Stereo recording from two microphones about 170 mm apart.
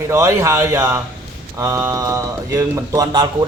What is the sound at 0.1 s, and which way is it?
Speech, 15° right (ahead or behind).